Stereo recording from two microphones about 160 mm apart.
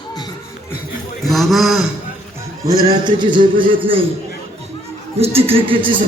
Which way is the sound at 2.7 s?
25° right (ahead or behind).